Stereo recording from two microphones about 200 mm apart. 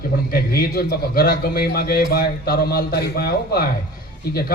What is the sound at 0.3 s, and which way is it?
A man's voice, 50° left (ahead or behind).